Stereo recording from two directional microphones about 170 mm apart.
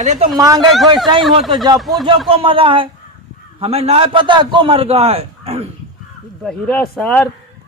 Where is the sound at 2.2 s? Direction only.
35° right (ahead or behind).